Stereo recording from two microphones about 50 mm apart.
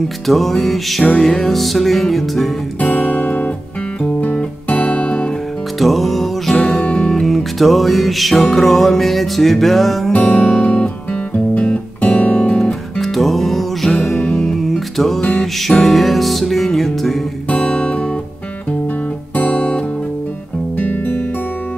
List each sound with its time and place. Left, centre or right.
0.3 s music: centre
2.8 s music: left
5.8 s music: centre
6.8 s music: left
7.1 s music: centre
10.1 s music: left
10.4 s guitar: centre
12.5 s music: left
13.0 s music: centre
15.1 s music: centre
15.8 s music: centre
17.5 s music: left
20.7 s music: left